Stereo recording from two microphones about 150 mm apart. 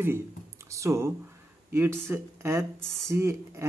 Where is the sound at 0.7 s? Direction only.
20° right (ahead or behind).